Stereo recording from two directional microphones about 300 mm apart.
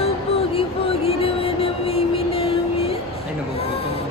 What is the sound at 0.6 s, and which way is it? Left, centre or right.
Music, centre.